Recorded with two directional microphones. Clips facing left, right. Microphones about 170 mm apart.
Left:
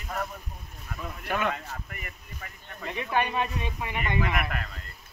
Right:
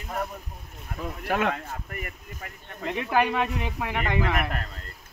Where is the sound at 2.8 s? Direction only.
90° right.